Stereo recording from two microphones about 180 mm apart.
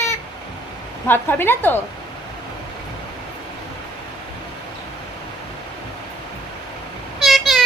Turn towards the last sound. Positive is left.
turn(degrees=0)  # may be behind; listen again after turning